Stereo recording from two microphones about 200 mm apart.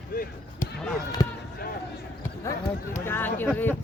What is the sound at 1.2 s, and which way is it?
Speech, 20° left (ahead or behind).